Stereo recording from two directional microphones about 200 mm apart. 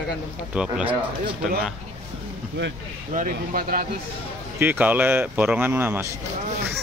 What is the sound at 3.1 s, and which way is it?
Speech, 40° right (ahead or behind).